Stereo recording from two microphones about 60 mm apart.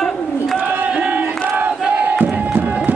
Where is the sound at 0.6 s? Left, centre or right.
Right.